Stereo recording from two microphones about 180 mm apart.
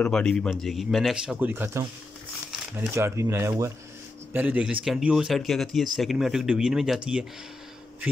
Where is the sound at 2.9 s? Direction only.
15° right (ahead or behind).